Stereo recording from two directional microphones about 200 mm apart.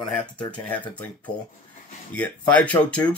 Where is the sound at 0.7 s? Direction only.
5° left (ahead or behind).